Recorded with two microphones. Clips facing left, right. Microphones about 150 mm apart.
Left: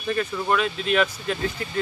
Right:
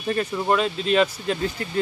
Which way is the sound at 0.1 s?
30° right (ahead or behind).